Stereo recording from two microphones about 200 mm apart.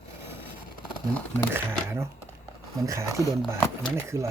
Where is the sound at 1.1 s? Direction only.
10° left (ahead or behind).